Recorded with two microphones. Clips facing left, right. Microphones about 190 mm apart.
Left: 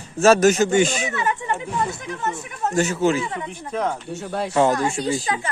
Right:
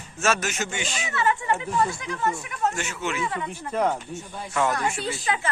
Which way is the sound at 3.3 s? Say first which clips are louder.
Left 1 dB; 20° left (ahead or behind).